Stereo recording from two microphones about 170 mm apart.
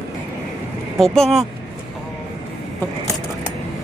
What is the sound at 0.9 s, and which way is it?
Speech, centre (ahead or behind).